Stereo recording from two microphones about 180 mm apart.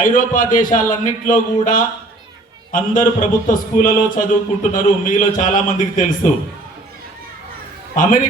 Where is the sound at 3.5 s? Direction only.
45° left (ahead or behind).